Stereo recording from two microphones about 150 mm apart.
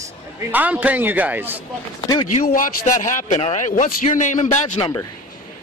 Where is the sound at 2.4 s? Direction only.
70° left (ahead or behind); by 4.8 s 55° left (ahead or behind).